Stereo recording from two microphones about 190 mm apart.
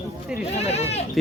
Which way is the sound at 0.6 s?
35° left (ahead or behind).